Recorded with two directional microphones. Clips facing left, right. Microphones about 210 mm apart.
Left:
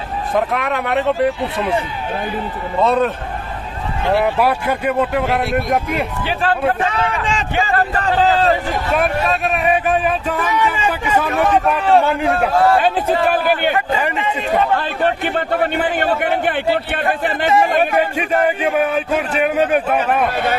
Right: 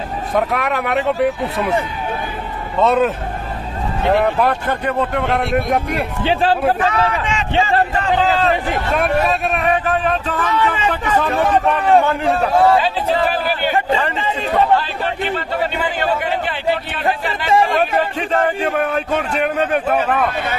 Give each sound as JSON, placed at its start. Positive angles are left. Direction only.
{"t": 0.3, "sound": "speech", "side_deg": 0}
{"t": 2.8, "sound": "speech", "side_deg": 0}
{"t": 4.2, "sound": "speech", "side_deg": 10}
{"t": 7.1, "sound": "speech", "side_deg": 35}
{"t": 8.9, "sound": "a man's voice", "side_deg": 0}
{"t": 12.7, "sound": "a man's voice", "side_deg": 50}
{"t": 14.8, "sound": "a man's voice", "side_deg": 55}
{"t": 17.7, "sound": "a man's voice", "side_deg": 10}